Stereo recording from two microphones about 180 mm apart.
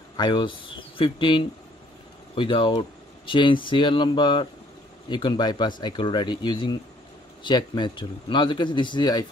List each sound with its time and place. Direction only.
0.2 s a man's voice: 25° left (ahead or behind)